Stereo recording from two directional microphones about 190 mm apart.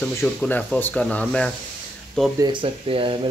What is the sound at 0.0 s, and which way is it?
Speech, 10° left (ahead or behind).